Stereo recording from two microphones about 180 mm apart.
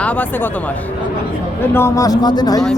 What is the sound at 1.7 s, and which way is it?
Speech, 15° left (ahead or behind).